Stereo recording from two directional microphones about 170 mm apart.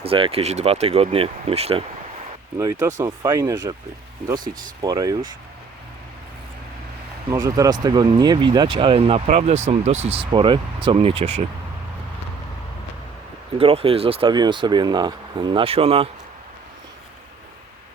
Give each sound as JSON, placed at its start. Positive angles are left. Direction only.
{"t": 0.0, "sound": "speech", "side_deg": -35}
{"t": 2.8, "sound": "speech", "side_deg": -15}
{"t": 4.4, "sound": "speech", "side_deg": -55}
{"t": 4.8, "sound": "speech", "side_deg": -20}
{"t": 7.3, "sound": "speech", "side_deg": -20}
{"t": 13.6, "sound": "speech", "side_deg": -35}